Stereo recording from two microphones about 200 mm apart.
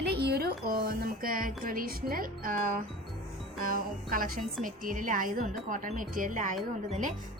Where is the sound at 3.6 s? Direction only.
45° right (ahead or behind).